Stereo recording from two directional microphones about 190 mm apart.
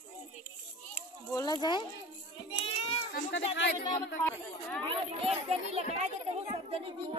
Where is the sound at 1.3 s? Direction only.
20° left (ahead or behind).